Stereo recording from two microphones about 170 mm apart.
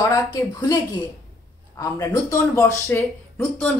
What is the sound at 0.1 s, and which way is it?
Speech, 20° left (ahead or behind).